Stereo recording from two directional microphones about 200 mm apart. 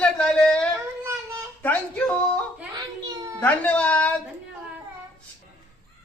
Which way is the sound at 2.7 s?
20° right (ahead or behind).